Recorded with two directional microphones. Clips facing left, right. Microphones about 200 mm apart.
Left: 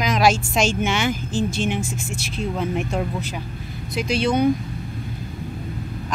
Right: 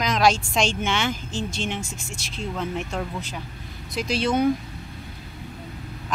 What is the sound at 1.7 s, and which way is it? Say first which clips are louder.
Speech: left 7 dB; 50° left (ahead or behind).